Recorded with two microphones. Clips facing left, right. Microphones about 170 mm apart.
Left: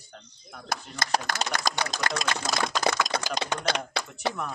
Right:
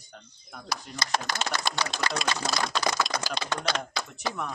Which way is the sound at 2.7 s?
45° left (ahead or behind).